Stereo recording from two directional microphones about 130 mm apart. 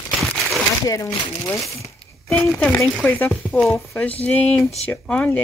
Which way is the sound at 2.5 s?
5° left (ahead or behind).